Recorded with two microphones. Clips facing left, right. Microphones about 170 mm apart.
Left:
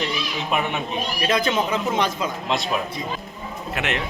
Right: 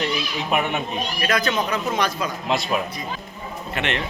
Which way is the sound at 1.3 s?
25° left (ahead or behind).